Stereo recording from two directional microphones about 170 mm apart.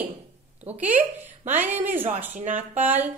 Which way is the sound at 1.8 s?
10° right (ahead or behind).